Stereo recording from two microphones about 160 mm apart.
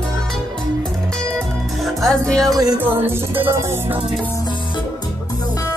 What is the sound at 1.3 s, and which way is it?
Music, centre (ahead or behind).